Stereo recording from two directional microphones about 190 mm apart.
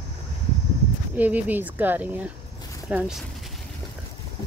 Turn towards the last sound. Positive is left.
turn(degrees=-10)  # may be behind; listen again after turning